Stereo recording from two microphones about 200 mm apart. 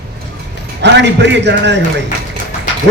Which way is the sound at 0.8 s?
60° right (ahead or behind).